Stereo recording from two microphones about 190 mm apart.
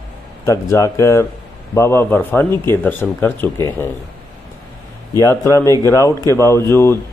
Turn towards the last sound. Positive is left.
turn(degrees=15)  # may be behind; listen again after turning